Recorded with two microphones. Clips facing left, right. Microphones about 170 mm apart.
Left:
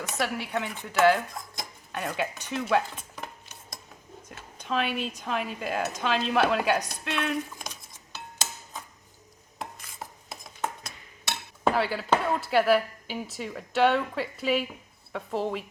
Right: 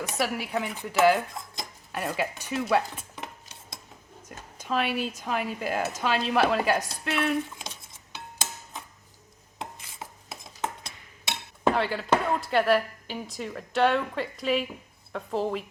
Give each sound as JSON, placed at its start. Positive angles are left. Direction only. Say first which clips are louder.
{"t": 0.0, "sound": "speech", "louder": "right 1 dB", "side_deg": -5}
{"t": 4.5, "sound": "speech", "louder": "right 1 dB", "side_deg": -5}
{"t": 11.6, "sound": "a sound", "louder": "right 1 dB", "side_deg": 5}
{"t": 12.4, "sound": "speech", "louder": "left 1 dB", "side_deg": 5}